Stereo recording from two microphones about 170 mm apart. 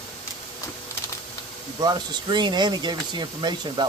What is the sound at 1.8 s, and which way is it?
Speech, 25° right (ahead or behind).